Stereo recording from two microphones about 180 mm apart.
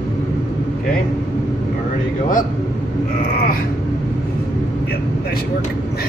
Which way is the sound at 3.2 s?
55° left (ahead or behind).